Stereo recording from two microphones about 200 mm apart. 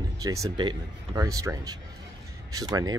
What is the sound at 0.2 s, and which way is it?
Speech, 15° right (ahead or behind).